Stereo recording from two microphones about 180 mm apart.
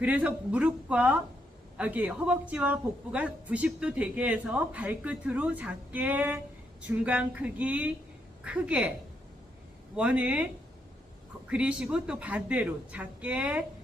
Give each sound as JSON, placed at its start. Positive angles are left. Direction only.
{"t": 0.0, "sound": "a woman's voice", "side_deg": -5}
{"t": 9.9, "sound": "a woman's voice", "side_deg": -5}